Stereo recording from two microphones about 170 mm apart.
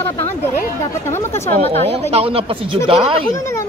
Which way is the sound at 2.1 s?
35° right (ahead or behind).